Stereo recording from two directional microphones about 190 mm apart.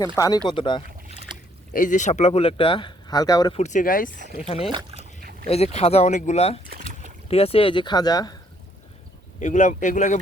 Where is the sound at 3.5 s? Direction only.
40° left (ahead or behind).